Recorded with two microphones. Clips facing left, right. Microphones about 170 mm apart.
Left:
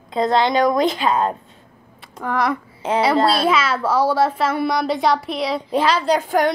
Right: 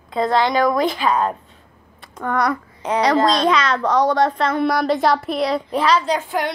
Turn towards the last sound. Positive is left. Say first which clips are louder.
# left 4 dB
turn(degrees=45)  # may be behind; listen again after turning